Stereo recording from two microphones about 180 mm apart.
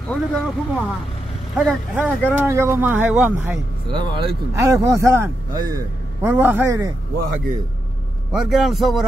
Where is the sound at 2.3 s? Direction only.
15° right (ahead or behind).